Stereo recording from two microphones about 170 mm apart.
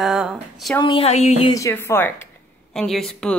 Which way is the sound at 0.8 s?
35° left (ahead or behind).